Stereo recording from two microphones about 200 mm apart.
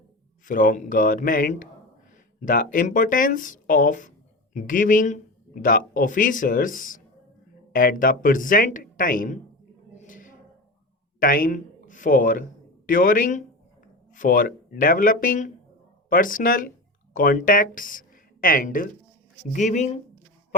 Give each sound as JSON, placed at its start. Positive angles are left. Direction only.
{"t": 0.4, "sound": "speech", "side_deg": 40}
{"t": 9.9, "sound": "a sound", "side_deg": 40}
{"t": 11.2, "sound": "a man's voice", "side_deg": 45}